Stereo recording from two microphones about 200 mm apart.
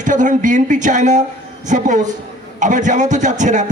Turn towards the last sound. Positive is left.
turn(degrees=-40)  # may be behind; listen again after turning